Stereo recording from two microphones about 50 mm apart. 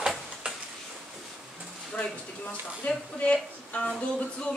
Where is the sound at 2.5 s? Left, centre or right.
Left.